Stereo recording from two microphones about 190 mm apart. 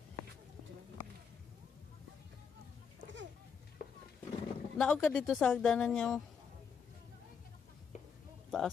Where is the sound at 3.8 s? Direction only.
50° left (ahead or behind).